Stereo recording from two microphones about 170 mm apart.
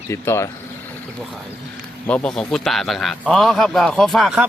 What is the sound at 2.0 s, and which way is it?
A man's voice, 5° left (ahead or behind).